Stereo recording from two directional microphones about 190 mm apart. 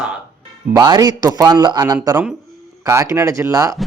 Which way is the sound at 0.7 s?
20° right (ahead or behind).